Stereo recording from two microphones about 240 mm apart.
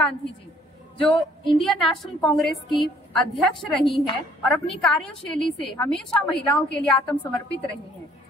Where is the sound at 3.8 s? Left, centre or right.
Left.